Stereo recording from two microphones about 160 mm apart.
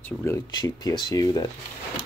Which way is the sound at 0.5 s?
25° left (ahead or behind).